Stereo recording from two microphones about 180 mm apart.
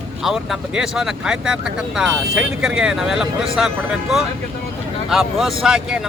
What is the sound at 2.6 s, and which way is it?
Speech, 5° right (ahead or behind).